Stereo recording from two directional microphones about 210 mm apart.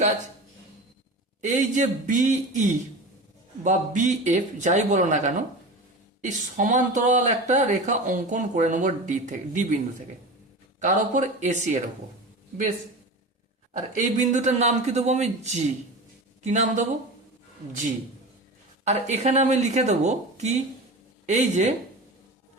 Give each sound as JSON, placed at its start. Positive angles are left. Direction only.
{"t": 1.4, "sound": "speech", "side_deg": -35}
{"t": 10.8, "sound": "speech", "side_deg": -35}
{"t": 13.7, "sound": "speech", "side_deg": -35}
{"t": 18.9, "sound": "speech", "side_deg": -35}